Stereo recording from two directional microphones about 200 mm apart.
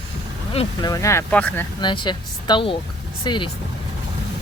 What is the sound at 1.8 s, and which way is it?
Speech, 25° left (ahead or behind).